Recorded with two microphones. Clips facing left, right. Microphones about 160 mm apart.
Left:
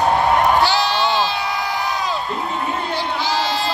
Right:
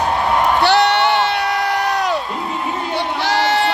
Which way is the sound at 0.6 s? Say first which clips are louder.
Right 4 dB; 70° right (ahead or behind).